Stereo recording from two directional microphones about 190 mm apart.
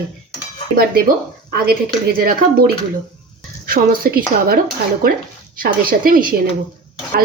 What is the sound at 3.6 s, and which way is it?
Speech, 50° right (ahead or behind).